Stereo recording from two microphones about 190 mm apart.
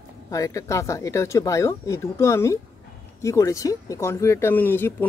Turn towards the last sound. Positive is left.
turn(degrees=10)  # may be behind; listen again after turning